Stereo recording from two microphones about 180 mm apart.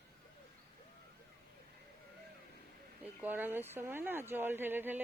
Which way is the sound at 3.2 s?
10° right (ahead or behind).